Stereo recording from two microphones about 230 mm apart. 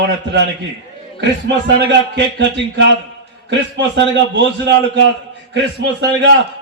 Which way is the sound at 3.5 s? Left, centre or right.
Right.